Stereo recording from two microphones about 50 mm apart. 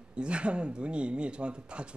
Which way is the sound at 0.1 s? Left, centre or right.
Right.